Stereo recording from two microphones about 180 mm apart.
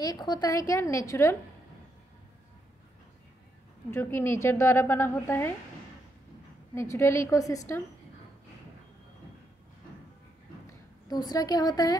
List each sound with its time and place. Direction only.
0.0 s a woman's voice: 20° left (ahead or behind)
3.9 s a woman's voice: 15° left (ahead or behind)
6.7 s a woman's voice: 15° left (ahead or behind)
11.1 s a woman's voice: 20° left (ahead or behind)